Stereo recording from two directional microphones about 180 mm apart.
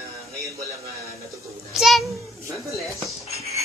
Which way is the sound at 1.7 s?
Centre (ahead or behind).